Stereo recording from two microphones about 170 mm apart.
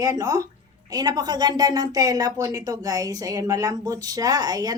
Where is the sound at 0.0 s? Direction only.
20° right (ahead or behind).